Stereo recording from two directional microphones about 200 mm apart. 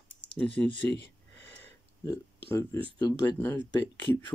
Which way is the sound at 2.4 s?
15° left (ahead or behind).